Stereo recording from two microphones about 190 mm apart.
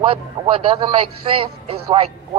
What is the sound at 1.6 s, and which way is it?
Speech, 30° right (ahead or behind).